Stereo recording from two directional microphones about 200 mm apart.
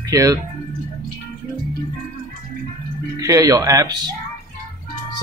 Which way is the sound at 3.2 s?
15° right (ahead or behind).